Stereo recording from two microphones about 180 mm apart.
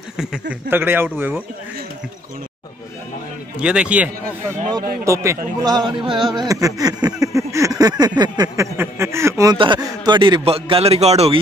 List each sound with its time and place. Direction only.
0.2 s speech: 5° right (ahead or behind)
3.5 s a man's voice: 5° right (ahead or behind)
8.2 s a sound: 20° right (ahead or behind)
9.6 s a man's voice: 25° right (ahead or behind)